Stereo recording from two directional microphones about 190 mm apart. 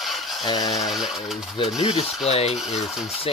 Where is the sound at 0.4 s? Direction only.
20° left (ahead or behind).